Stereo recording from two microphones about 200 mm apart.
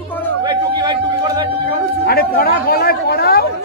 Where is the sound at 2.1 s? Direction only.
50° left (ahead or behind).